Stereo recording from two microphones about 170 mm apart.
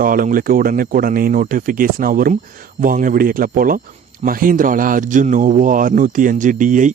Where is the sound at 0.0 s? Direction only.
55° right (ahead or behind).